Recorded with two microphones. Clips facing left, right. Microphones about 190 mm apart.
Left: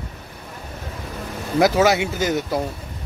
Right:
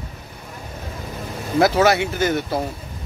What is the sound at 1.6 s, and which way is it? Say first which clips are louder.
Speech: even; 15° left (ahead or behind).